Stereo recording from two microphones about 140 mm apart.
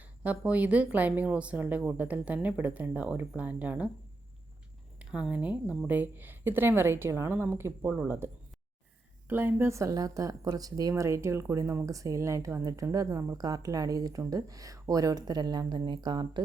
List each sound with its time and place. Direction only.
0.0 s a woman's voice: 10° right (ahead or behind)
4.9 s a woman's voice: 10° right (ahead or behind); by 16.4 s 30° right (ahead or behind)